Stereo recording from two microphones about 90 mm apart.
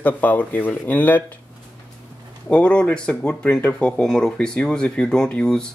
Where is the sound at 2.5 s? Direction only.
15° left (ahead or behind).